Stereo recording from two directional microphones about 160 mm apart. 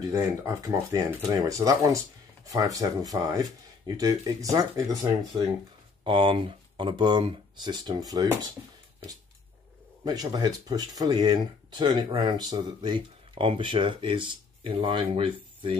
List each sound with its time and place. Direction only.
0.1 s speech: 20° right (ahead or behind)
6.0 s speech: 35° right (ahead or behind)
10.0 s speech: 25° right (ahead or behind)